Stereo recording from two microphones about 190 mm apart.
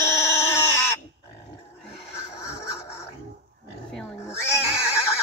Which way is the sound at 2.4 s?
15° left (ahead or behind).